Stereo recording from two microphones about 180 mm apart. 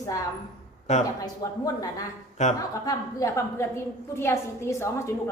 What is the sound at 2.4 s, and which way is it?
Speech, 40° left (ahead or behind).